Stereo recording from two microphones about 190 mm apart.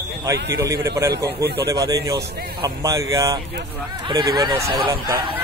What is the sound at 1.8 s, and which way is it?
Speech, 20° right (ahead or behind).